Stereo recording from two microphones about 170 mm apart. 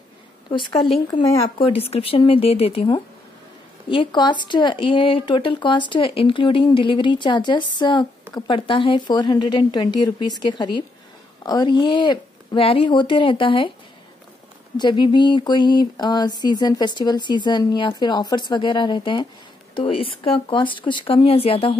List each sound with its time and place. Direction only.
1.4 s speech: 35° left (ahead or behind)
3.9 s speech: 30° left (ahead or behind)
14.8 s speech: 25° left (ahead or behind)